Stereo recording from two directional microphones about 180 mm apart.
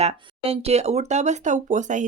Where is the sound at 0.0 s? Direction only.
35° right (ahead or behind).